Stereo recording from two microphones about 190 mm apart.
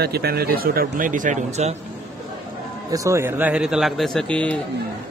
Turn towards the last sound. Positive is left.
turn(degrees=5)  # may be behind; listen again after turning